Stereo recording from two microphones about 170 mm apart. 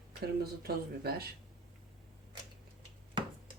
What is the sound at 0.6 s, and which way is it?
Speech, 65° right (ahead or behind).